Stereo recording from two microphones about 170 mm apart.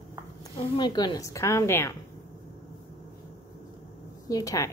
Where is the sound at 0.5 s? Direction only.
25° left (ahead or behind).